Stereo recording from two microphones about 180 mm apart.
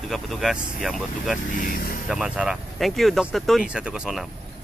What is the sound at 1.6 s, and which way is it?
Speech, 50° left (ahead or behind).